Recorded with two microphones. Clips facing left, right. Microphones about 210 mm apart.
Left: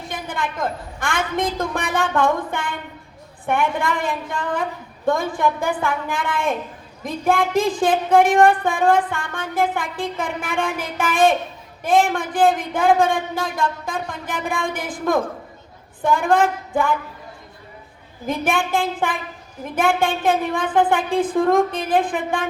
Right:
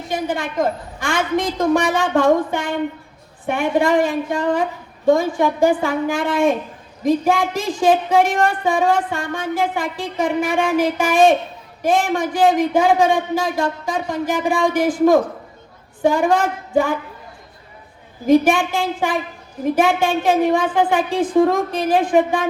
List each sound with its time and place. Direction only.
0.1 s a woman's voice: 55° left (ahead or behind)
18.3 s speech: 55° left (ahead or behind)